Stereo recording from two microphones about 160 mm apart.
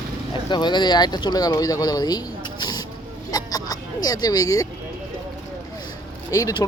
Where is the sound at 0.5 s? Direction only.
30° left (ahead or behind).